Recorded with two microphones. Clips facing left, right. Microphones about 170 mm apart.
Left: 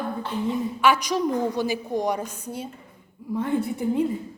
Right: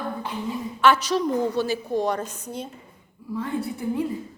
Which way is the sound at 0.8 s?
10° left (ahead or behind).